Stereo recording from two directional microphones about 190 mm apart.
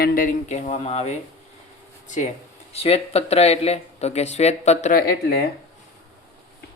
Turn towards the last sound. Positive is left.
turn(degrees=55)  # may be behind; listen again after turning